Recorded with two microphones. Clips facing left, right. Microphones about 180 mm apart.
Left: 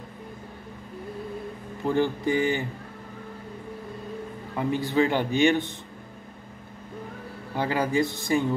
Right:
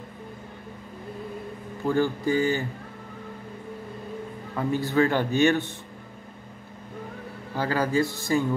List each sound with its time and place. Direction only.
1.9 s a man's voice: 20° left (ahead or behind)
4.6 s a man's voice: 15° left (ahead or behind)
7.5 s a man's voice: 15° left (ahead or behind)